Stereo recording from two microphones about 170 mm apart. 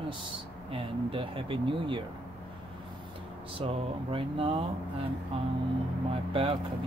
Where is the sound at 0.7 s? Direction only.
30° right (ahead or behind).